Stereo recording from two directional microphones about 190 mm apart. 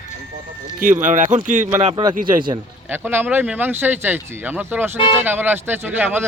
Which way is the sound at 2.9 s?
10° right (ahead or behind).